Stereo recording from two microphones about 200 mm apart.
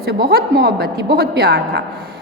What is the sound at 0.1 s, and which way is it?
A woman's voice, 50° right (ahead or behind).